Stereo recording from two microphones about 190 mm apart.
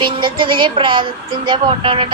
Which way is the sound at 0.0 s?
25° right (ahead or behind).